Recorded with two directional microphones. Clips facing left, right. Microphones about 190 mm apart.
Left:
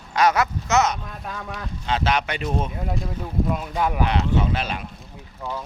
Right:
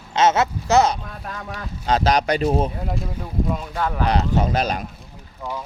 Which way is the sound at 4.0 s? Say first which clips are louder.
Right 2 dB; 40° right (ahead or behind).